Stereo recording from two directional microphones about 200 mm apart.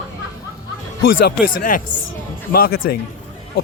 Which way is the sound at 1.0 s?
45° left (ahead or behind).